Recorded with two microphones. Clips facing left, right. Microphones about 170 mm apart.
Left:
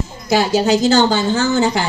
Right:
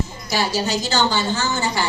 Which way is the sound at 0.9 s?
55° left (ahead or behind).